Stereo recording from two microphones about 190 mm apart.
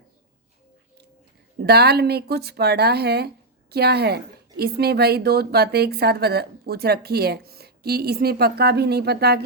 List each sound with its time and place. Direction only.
1.5 s speech: 60° right (ahead or behind)